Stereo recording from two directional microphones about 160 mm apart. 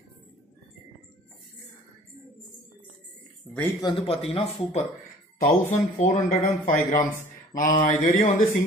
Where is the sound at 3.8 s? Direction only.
35° left (ahead or behind).